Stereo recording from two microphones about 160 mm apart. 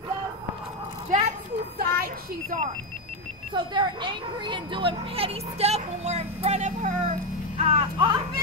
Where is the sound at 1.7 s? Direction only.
65° right (ahead or behind).